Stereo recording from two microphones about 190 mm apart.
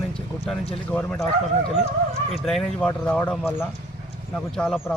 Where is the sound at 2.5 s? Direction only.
Centre (ahead or behind).